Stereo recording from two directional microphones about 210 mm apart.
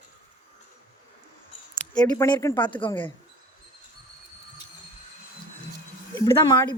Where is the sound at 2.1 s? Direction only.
15° left (ahead or behind).